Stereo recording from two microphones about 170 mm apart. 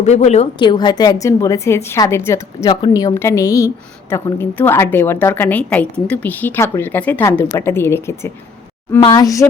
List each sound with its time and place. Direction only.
0.0 s a woman's voice: 40° left (ahead or behind)
0.6 s a woman's voice: 25° left (ahead or behind)
9.0 s a woman's voice: 25° left (ahead or behind)